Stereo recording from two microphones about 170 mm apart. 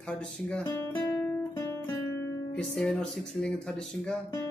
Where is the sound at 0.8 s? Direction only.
15° left (ahead or behind).